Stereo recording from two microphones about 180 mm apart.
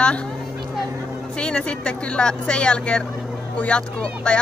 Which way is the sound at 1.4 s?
5° left (ahead or behind).